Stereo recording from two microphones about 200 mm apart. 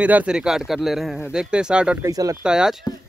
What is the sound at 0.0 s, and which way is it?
Speech, 5° right (ahead or behind).